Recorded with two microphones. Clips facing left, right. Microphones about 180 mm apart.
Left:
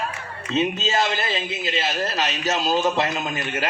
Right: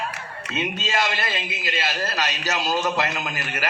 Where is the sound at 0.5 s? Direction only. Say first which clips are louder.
Left 4 dB; 25° left (ahead or behind).